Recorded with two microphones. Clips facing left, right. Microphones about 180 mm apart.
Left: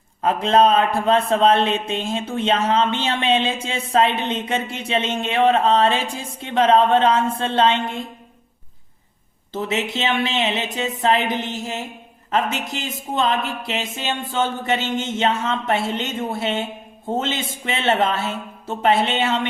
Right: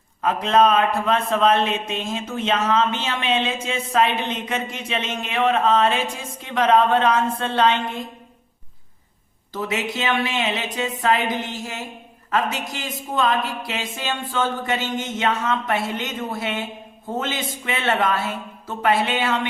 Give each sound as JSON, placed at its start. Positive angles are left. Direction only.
{"t": 0.2, "sound": "a man's voice", "side_deg": 30}
{"t": 9.5, "sound": "a man's voice", "side_deg": 25}